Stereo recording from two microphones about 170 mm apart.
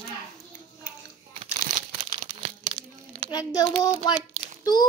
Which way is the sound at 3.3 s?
20° left (ahead or behind).